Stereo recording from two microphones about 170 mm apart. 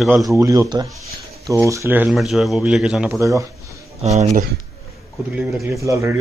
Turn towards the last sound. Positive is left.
turn(degrees=-15)  # may be behind; listen again after turning